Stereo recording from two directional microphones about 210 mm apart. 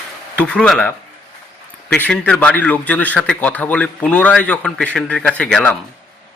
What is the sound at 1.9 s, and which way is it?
A man's voice, 5° left (ahead or behind).